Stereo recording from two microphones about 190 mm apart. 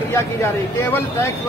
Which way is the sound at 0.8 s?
10° left (ahead or behind).